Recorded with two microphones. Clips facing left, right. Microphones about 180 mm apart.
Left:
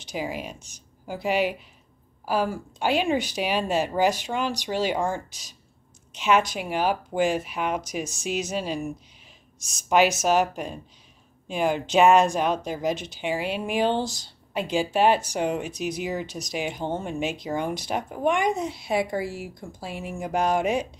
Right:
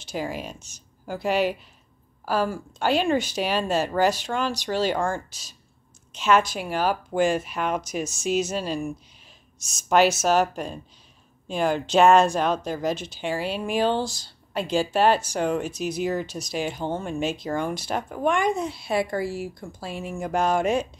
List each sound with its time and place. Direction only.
0.0 s speech: 15° left (ahead or behind)